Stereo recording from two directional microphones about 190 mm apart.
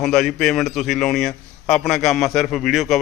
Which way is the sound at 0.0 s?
Centre (ahead or behind).